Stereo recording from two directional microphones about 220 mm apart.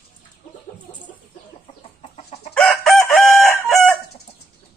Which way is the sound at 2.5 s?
5° left (ahead or behind).